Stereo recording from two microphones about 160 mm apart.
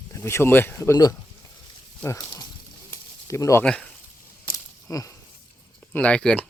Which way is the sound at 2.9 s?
20° left (ahead or behind).